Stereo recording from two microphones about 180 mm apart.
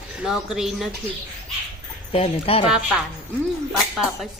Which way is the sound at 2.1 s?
35° left (ahead or behind).